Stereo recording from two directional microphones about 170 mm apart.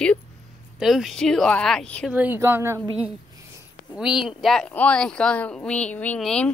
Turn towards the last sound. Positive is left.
turn(degrees=5)  # may be behind; listen again after turning